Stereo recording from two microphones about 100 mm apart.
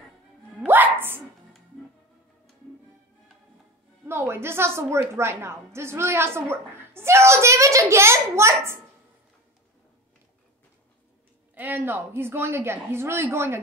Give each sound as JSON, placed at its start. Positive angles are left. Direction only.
{"t": 0.7, "sound": "a sound", "side_deg": -20}
{"t": 4.1, "sound": "a woman's voice", "side_deg": -25}
{"t": 11.5, "sound": "a woman's voice", "side_deg": -20}